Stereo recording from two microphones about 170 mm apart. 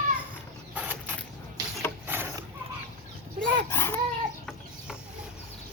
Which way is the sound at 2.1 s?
15° right (ahead or behind).